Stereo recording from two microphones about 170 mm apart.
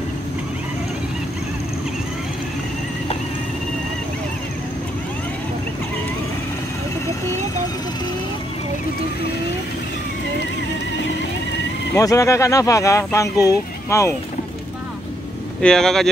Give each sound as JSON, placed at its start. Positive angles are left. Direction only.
{"t": 11.9, "sound": "speech", "side_deg": 20}
{"t": 15.6, "sound": "speech", "side_deg": 5}